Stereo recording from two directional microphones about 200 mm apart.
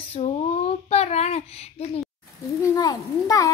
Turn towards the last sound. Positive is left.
turn(degrees=15)  # may be behind; listen again after turning